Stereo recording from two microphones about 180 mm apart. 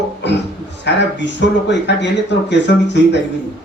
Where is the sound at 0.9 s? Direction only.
75° left (ahead or behind).